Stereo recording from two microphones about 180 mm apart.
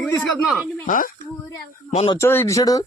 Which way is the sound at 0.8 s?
50° left (ahead or behind).